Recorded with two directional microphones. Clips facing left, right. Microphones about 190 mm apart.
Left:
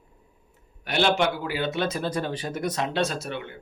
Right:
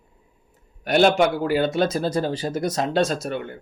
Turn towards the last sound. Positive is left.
turn(degrees=-45)  # may be behind; listen again after turning